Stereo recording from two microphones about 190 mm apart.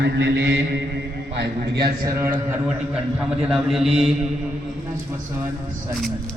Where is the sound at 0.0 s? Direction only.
65° right (ahead or behind).